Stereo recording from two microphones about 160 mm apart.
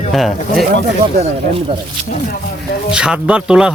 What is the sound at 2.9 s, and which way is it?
Speech, 5° right (ahead or behind).